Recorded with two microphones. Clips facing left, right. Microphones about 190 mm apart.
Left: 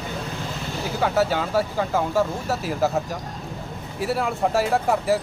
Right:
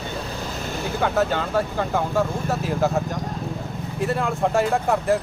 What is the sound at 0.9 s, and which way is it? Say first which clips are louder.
Speech: even; 5° left (ahead or behind).